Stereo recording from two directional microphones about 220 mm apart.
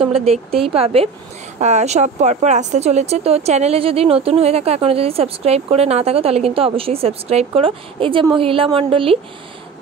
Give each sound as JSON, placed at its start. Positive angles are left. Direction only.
{"t": 0.1, "sound": "speech", "side_deg": -30}